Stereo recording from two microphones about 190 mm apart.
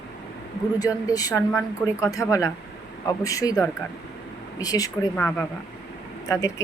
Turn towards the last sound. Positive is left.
turn(degrees=15)  # may be behind; listen again after turning